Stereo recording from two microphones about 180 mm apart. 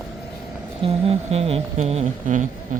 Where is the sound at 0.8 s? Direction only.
30° right (ahead or behind).